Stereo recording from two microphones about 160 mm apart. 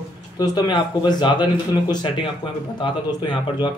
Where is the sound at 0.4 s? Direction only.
25° left (ahead or behind).